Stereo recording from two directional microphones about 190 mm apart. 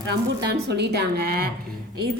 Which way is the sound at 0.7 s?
60° right (ahead or behind).